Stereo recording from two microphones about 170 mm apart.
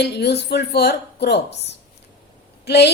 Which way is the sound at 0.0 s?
75° left (ahead or behind).